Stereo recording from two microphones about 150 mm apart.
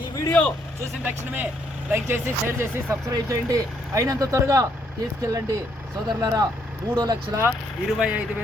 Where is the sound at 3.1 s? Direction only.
25° right (ahead or behind).